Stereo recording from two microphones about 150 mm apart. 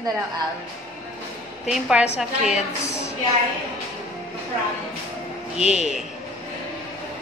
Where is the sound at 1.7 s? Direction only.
5° right (ahead or behind).